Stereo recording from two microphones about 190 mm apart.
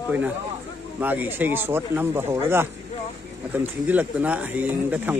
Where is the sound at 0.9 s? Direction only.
10° right (ahead or behind).